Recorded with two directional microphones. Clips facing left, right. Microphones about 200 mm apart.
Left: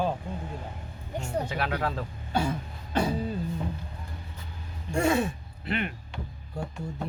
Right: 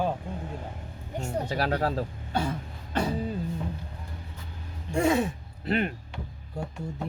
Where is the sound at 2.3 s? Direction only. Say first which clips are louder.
Left 5 dB; 10° left (ahead or behind).